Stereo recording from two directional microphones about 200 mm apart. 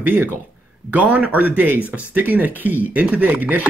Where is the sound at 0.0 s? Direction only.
10° right (ahead or behind).